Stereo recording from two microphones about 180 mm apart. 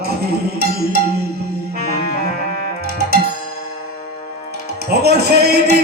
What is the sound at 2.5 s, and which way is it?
Music, 65° right (ahead or behind).